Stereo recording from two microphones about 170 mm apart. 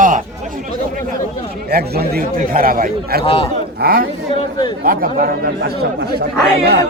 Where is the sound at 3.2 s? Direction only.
30° left (ahead or behind).